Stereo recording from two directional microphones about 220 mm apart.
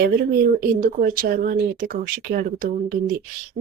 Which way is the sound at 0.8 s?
40° right (ahead or behind).